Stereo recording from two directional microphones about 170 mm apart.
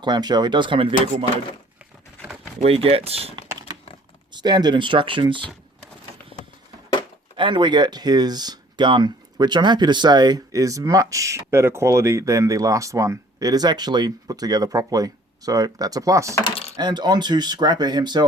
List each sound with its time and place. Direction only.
0.0 s speech: 25° right (ahead or behind)
2.6 s speech: 35° right (ahead or behind)
4.3 s speech: 25° right (ahead or behind)
6.3 s a sound: 35° left (ahead or behind)
7.3 s speech: 30° right (ahead or behind)